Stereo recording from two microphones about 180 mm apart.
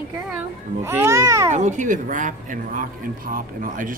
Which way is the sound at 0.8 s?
15° right (ahead or behind).